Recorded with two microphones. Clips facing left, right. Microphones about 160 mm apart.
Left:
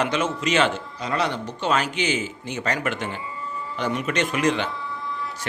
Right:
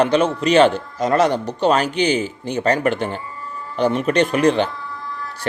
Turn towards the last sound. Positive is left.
turn(degrees=-35)  # may be behind; listen again after turning